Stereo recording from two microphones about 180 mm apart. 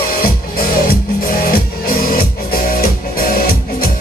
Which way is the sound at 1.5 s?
55° left (ahead or behind).